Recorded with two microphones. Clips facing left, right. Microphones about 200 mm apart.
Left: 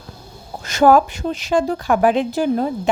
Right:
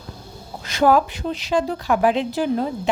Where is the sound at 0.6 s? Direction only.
45° left (ahead or behind).